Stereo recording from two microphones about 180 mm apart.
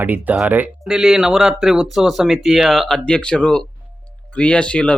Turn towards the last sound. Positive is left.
turn(degrees=5)  # may be behind; listen again after turning